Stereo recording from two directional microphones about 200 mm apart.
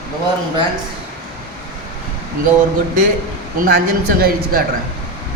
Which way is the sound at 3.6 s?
50° right (ahead or behind).